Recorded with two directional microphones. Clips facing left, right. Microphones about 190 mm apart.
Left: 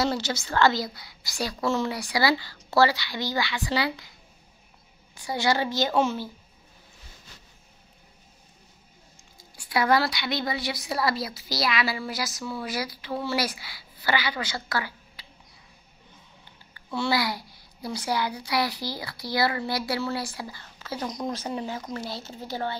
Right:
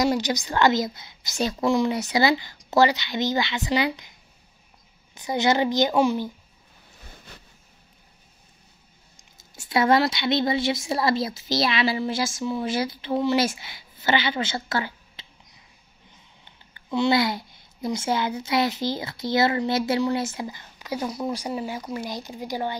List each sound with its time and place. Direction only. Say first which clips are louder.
0.0 s speech: right 4 dB; 15° right (ahead or behind)
5.1 s a woman's voice: right 3 dB; 20° right (ahead or behind)
7.3 s vehicle: right 5 dB; 60° right (ahead or behind)
9.1 s speech: right 3 dB; 25° right (ahead or behind)
16.7 s speech: right 5 dB; 20° right (ahead or behind)